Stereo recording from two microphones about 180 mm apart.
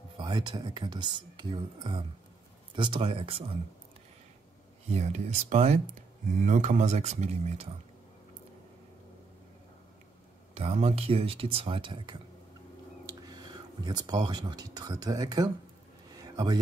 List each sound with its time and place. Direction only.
0.2 s speech: 25° right (ahead or behind)
4.8 s speech: 40° right (ahead or behind)
10.5 s speech: 35° right (ahead or behind)
16.1 s a sound: 20° right (ahead or behind)